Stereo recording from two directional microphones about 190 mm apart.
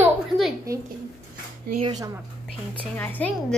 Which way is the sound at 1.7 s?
35° right (ahead or behind).